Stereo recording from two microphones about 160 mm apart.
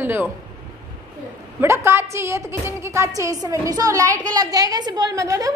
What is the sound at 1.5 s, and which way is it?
A woman's voice, 15° right (ahead or behind).